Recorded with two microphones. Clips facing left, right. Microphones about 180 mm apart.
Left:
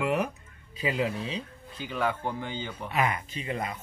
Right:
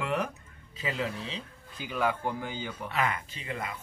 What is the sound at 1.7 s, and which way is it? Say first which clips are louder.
Speech: even; 10° right (ahead or behind).